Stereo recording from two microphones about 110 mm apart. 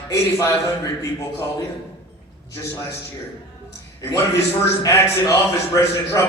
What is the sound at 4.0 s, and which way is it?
A man's voice, 25° left (ahead or behind).